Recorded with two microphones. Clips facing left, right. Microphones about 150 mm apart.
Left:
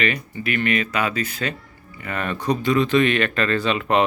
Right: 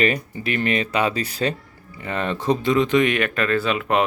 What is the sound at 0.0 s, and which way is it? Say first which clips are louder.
Speech: right 3 dB; 35° right (ahead or behind).